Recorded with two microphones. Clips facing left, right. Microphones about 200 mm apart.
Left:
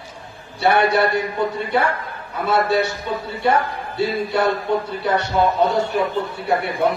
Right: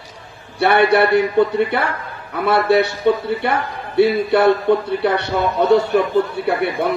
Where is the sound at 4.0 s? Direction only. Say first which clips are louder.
Right 6 dB; 60° right (ahead or behind).